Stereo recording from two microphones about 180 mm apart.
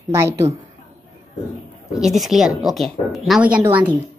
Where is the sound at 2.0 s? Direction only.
Centre (ahead or behind).